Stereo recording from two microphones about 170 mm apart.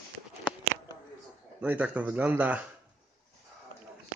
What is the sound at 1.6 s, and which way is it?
A man's voice, 10° right (ahead or behind).